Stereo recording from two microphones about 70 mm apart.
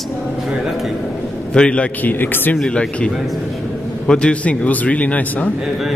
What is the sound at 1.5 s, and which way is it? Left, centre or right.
Speech, centre.